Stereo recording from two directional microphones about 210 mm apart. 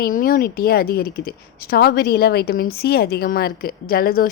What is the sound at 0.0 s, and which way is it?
A woman's voice, 45° left (ahead or behind).